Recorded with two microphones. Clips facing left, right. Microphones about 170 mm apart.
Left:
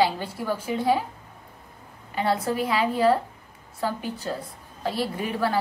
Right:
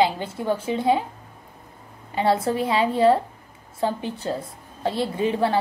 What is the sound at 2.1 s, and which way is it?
A woman's voice, 25° right (ahead or behind).